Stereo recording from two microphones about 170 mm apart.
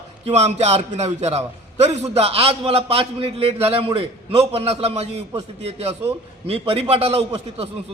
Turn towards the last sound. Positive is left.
turn(degrees=-35)  # may be behind; listen again after turning